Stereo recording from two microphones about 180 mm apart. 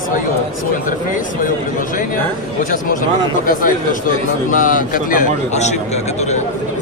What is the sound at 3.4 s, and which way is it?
A man's voice, 50° left (ahead or behind).